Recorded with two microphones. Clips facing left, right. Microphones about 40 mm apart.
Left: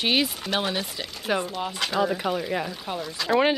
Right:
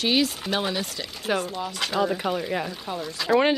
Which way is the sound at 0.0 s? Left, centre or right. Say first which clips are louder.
Right 1 dB; centre.